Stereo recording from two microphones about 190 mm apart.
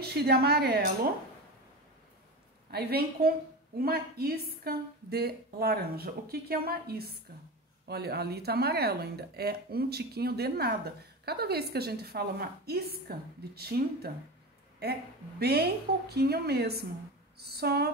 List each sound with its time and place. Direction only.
0.0 s a woman's voice: 55° right (ahead or behind)
2.7 s a woman's voice: 55° right (ahead or behind)